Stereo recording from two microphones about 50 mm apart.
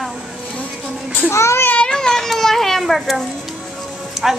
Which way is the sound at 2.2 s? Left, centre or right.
Centre.